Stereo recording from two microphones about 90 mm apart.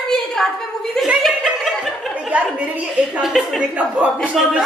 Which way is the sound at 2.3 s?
15° right (ahead or behind).